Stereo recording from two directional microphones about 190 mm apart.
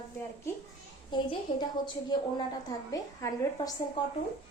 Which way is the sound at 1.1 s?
25° left (ahead or behind).